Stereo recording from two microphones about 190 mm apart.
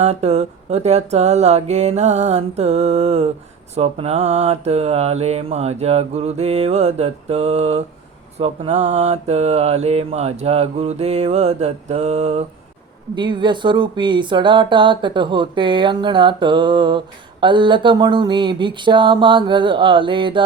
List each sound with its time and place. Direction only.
0.0 s mantra: 35° right (ahead or behind)
13.1 s speech: 25° right (ahead or behind)